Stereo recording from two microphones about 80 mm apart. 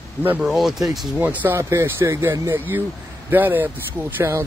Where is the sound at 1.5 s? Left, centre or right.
Right.